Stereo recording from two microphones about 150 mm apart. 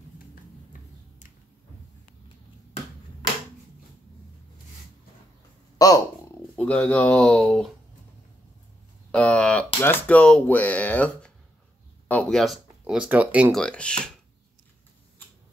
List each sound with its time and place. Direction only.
5.8 s a sound: 25° left (ahead or behind)
6.5 s speech: 5° left (ahead or behind)
9.1 s speech: 5° left (ahead or behind)
13.5 s speech: 5° left (ahead or behind)